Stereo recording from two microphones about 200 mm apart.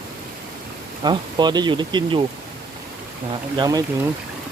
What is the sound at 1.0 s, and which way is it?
Speech, 20° right (ahead or behind).